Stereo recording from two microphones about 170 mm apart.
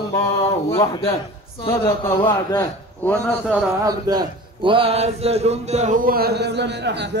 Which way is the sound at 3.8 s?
25° right (ahead or behind).